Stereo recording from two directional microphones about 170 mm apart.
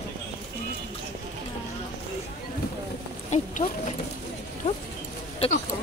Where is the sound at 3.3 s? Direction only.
45° left (ahead or behind).